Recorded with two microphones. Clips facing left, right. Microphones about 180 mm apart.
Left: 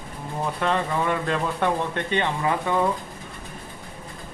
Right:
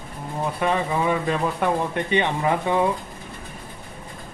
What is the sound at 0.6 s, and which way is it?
Speech, 10° right (ahead or behind).